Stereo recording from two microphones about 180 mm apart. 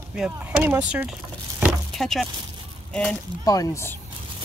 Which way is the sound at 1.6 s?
Centre (ahead or behind).